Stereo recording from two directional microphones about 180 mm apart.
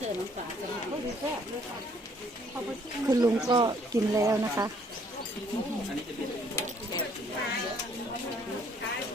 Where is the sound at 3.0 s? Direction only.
20° right (ahead or behind).